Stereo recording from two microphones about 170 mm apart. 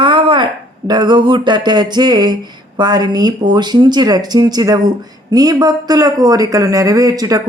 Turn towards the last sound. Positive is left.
turn(degrees=-20)  # may be behind; listen again after turning